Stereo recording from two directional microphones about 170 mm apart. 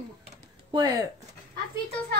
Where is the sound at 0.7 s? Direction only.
20° right (ahead or behind).